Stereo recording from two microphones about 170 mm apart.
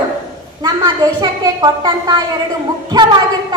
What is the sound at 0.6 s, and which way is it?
A woman's voice, 20° right (ahead or behind).